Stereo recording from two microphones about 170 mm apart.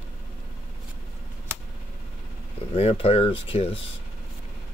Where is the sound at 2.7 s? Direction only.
35° left (ahead or behind).